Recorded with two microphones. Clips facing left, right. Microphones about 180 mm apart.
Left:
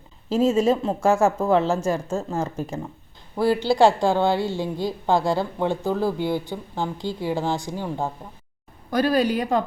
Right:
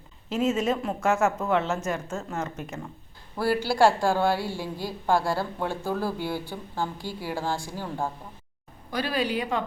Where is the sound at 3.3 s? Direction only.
20° left (ahead or behind).